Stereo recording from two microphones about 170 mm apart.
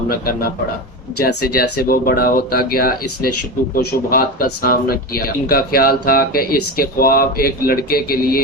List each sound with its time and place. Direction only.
0.1 s speech: 60° left (ahead or behind)